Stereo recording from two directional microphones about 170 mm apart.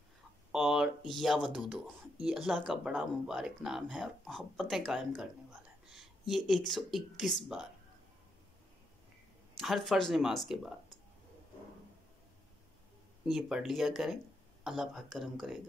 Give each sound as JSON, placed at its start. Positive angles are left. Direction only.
{"t": 0.5, "sound": "speech", "side_deg": -5}
{"t": 5.9, "sound": "a sound", "side_deg": 0}
{"t": 6.7, "sound": "speech", "side_deg": 0}
{"t": 9.6, "sound": "speech", "side_deg": 0}
{"t": 13.2, "sound": "speech", "side_deg": -5}